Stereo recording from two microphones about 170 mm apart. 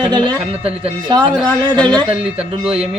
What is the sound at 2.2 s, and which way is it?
Speech, 35° right (ahead or behind).